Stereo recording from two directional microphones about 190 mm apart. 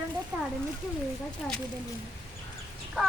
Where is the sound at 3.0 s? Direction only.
Centre (ahead or behind).